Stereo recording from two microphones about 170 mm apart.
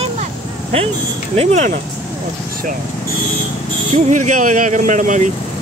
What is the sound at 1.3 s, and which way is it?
Speech, 40° right (ahead or behind).